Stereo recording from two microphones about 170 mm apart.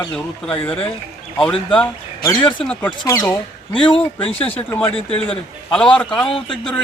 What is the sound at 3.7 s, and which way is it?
Speech, 30° left (ahead or behind).